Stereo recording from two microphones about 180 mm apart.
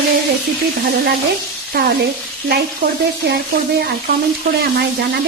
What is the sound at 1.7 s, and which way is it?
Speech, 60° right (ahead or behind).